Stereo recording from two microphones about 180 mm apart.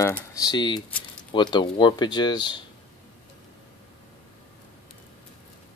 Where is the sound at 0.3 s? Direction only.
25° left (ahead or behind).